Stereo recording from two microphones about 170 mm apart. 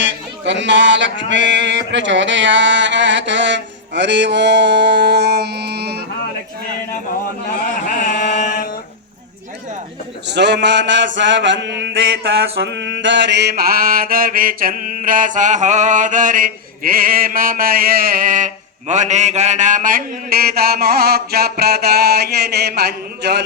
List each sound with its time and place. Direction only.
0.0 s a sound: 90° right; by 6.1 s 70° right (ahead or behind)
8.0 s chant: 50° left (ahead or behind)
10.2 s mantra: 90° right